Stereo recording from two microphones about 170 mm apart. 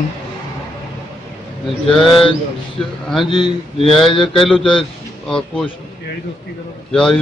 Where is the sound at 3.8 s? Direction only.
Centre (ahead or behind).